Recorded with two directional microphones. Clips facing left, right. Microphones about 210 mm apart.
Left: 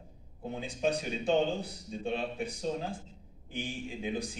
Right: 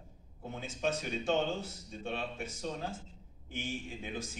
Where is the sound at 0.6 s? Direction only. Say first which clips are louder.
Left 3 dB; 15° left (ahead or behind).